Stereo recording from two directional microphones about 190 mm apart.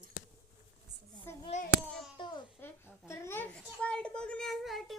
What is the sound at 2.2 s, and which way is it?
Speech, 25° left (ahead or behind).